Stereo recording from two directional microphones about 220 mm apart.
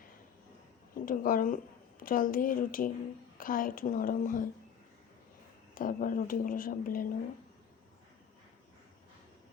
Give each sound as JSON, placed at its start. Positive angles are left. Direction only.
{"t": 1.0, "sound": "speech", "side_deg": 40}
{"t": 5.7, "sound": "speech", "side_deg": 40}